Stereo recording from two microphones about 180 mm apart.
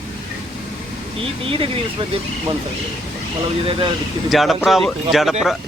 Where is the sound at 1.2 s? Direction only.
30° right (ahead or behind).